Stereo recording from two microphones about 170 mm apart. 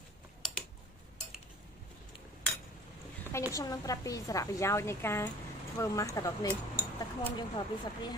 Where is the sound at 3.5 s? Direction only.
20° left (ahead or behind).